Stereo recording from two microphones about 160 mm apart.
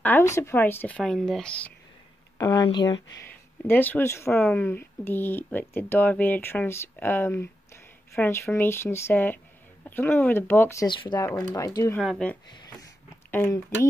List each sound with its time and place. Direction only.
0.0 s speech: 15° left (ahead or behind)
2.3 s speech: 25° left (ahead or behind)
3.2 s speech: 15° left (ahead or behind)
10.9 s speech: 30° left (ahead or behind)
12.0 s speech: centre (ahead or behind)
13.3 s speech: 15° left (ahead or behind)